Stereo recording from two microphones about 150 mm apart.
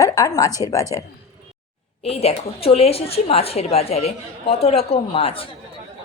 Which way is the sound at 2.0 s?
40° left (ahead or behind).